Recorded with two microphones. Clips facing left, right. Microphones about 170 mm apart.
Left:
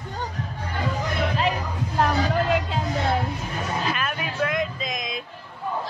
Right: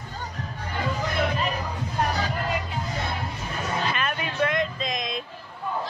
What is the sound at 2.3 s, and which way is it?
Music, 90° left.